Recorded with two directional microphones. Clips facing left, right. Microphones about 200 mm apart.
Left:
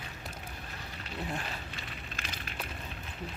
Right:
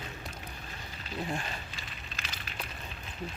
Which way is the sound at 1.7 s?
55° left (ahead or behind).